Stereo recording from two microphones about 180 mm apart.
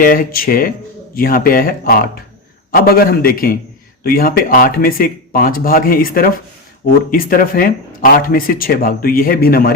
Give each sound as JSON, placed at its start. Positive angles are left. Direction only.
{"t": 0.0, "sound": "a man's voice", "side_deg": 55}